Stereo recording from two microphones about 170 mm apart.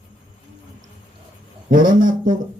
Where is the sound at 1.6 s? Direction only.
50° right (ahead or behind).